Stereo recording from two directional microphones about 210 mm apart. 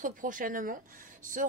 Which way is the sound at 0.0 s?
40° right (ahead or behind).